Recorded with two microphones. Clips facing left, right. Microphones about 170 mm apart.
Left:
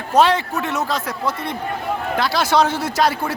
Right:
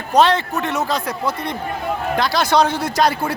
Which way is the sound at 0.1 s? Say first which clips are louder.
Right 1 dB; 10° left (ahead or behind).